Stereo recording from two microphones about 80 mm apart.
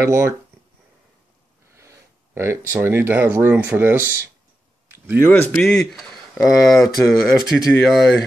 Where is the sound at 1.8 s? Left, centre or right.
Right.